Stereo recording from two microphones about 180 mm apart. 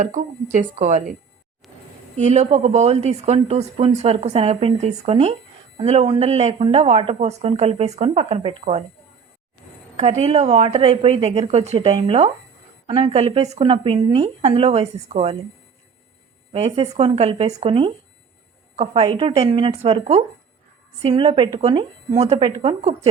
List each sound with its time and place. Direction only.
0.0 s a woman's voice: 45° right (ahead or behind)
1.6 s a sound: centre (ahead or behind)
2.1 s speech: 40° right (ahead or behind)
10.0 s speech: 35° right (ahead or behind)
16.5 s speech: 35° right (ahead or behind)